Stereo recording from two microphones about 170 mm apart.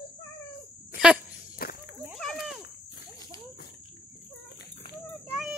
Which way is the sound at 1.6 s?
60° left (ahead or behind).